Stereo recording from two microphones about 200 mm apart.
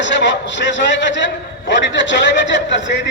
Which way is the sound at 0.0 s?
65° left (ahead or behind).